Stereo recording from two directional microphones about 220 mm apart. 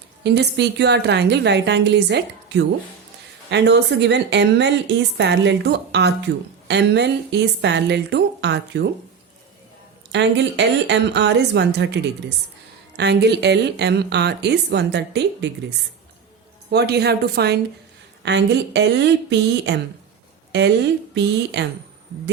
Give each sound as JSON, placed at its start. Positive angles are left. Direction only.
{"t": 0.2, "sound": "a woman's voice", "side_deg": -50}
{"t": 10.1, "sound": "a woman's voice", "side_deg": -50}
{"t": 13.0, "sound": "a woman's voice", "side_deg": -50}
{"t": 16.7, "sound": "a woman's voice", "side_deg": -50}